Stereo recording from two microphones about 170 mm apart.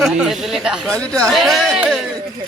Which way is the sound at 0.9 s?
20° right (ahead or behind).